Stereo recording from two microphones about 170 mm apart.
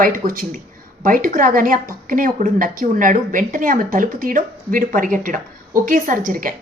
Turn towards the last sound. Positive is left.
turn(degrees=-55)  # may be behind; listen again after turning